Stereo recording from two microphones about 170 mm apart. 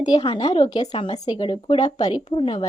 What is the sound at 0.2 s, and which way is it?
A woman's voice, 35° left (ahead or behind).